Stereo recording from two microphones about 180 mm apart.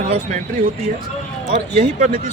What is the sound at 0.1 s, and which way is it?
Speech, 45° right (ahead or behind).